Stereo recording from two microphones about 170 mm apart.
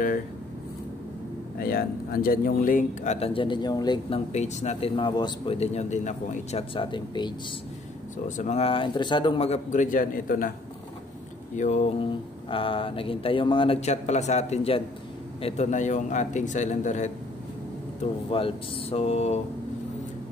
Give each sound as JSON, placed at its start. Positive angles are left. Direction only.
{"t": 1.6, "sound": "speech", "side_deg": 60}
{"t": 3.3, "sound": "speech", "side_deg": 25}
{"t": 4.3, "sound": "speech", "side_deg": 40}
{"t": 6.7, "sound": "speech", "side_deg": 30}
{"t": 8.3, "sound": "speech", "side_deg": 45}
{"t": 11.5, "sound": "a man's voice", "side_deg": 45}
{"t": 18.3, "sound": "speech", "side_deg": 35}